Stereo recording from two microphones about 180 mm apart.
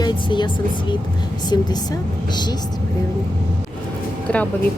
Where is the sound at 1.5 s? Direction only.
20° left (ahead or behind).